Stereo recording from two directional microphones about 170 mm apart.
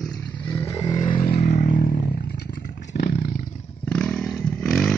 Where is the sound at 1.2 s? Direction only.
70° left (ahead or behind).